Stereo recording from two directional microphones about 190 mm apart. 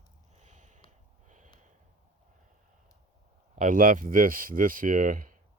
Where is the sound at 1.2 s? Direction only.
40° right (ahead or behind).